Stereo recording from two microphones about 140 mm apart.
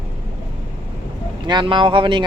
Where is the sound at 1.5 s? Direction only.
35° right (ahead or behind).